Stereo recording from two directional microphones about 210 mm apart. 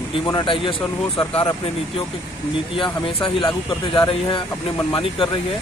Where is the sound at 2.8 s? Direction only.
25° left (ahead or behind).